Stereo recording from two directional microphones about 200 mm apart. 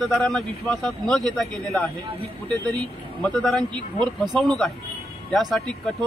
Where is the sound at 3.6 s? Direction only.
20° right (ahead or behind).